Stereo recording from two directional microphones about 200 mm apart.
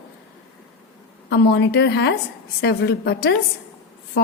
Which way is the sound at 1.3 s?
60° left (ahead or behind).